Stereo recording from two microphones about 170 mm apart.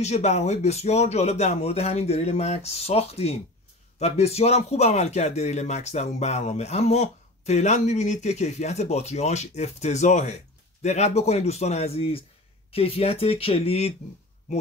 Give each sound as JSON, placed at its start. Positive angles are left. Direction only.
{"t": 0.0, "sound": "a man's voice", "side_deg": 40}